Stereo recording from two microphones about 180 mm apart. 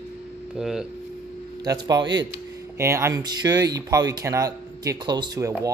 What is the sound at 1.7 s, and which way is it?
Speech, 20° right (ahead or behind).